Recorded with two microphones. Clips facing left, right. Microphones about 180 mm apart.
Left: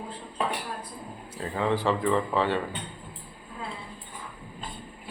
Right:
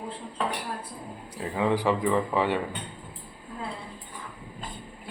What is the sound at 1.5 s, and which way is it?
Speech, 15° right (ahead or behind).